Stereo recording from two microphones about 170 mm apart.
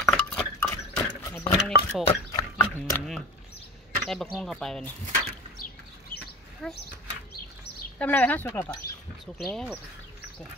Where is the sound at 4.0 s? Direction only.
Centre (ahead or behind).